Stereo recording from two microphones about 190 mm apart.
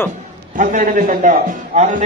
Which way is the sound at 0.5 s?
40° right (ahead or behind).